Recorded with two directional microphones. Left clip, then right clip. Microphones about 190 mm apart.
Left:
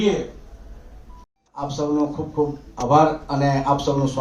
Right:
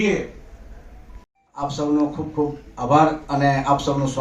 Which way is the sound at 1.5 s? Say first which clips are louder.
Right 1 dB; centre (ahead or behind).